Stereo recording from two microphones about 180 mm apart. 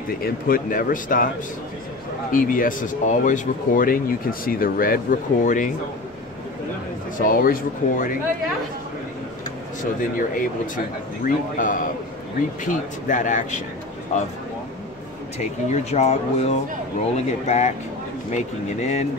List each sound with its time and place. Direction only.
0.2 s speech: 50° left (ahead or behind)
2.3 s speech: 50° left (ahead or behind)
7.2 s speech: 50° left (ahead or behind)
9.9 s speech: 50° left (ahead or behind)
15.3 s speech: 35° left (ahead or behind)